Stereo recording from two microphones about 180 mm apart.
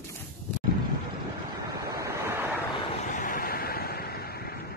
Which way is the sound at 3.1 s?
50° left (ahead or behind).